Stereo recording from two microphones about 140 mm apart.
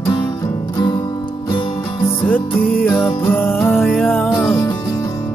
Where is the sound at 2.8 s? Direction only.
15° left (ahead or behind).